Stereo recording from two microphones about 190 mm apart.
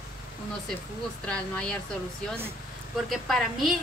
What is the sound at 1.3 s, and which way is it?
Speech, 5° left (ahead or behind).